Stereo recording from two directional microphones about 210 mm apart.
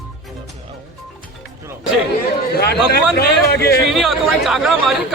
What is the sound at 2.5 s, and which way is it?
A man's voice, 50° left (ahead or behind).